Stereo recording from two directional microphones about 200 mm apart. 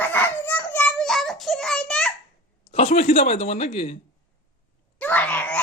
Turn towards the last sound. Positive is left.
turn(degrees=10)  # may be behind; listen again after turning